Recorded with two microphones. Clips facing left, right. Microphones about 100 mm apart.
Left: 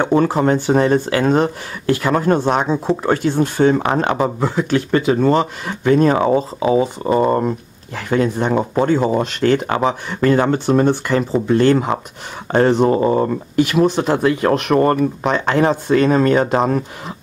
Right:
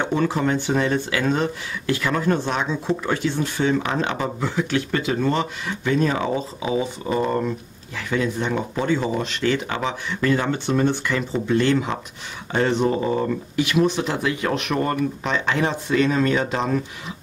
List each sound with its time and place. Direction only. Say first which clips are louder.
0.0 s speech: left 6 dB; 40° left (ahead or behind)